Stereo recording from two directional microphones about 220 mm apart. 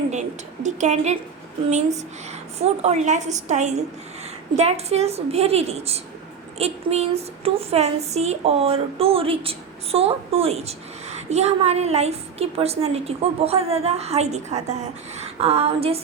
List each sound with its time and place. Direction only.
0.1 s a woman's voice: 30° right (ahead or behind)
2.6 s a woman's voice: 30° right (ahead or behind)